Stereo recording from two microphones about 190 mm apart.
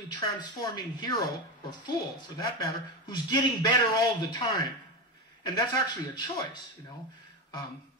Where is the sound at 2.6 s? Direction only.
20° left (ahead or behind).